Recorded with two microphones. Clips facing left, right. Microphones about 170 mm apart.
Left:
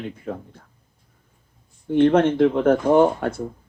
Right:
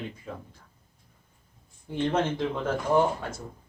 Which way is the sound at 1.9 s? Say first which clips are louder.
Left 11 dB; 60° left (ahead or behind).